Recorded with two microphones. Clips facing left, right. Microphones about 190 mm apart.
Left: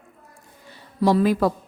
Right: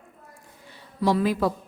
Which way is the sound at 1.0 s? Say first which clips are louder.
Left 4 dB; 45° left (ahead or behind).